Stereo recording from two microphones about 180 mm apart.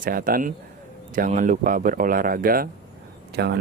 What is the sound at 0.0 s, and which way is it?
Speech, 50° right (ahead or behind).